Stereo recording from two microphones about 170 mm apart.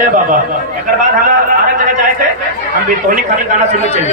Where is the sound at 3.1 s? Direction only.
50° right (ahead or behind).